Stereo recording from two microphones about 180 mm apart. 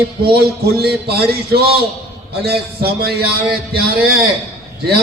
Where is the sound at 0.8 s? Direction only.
60° right (ahead or behind).